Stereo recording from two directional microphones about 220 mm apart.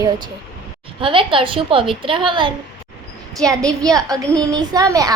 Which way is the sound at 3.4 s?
5° left (ahead or behind).